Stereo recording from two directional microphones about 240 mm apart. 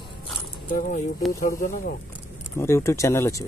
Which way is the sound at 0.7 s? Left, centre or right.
Left.